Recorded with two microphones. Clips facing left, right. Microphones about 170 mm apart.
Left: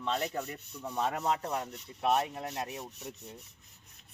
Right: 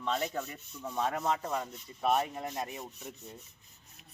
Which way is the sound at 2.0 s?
5° left (ahead or behind).